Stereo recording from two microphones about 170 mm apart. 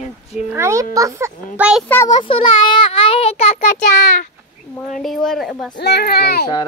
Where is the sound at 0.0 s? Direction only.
40° left (ahead or behind).